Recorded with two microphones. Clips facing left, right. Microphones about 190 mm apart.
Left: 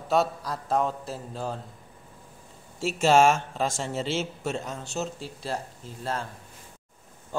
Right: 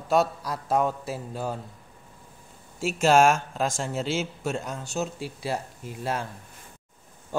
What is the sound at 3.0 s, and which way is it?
Speech, 5° right (ahead or behind).